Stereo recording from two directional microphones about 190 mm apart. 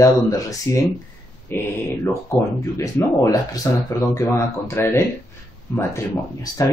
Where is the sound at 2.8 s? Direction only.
15° left (ahead or behind).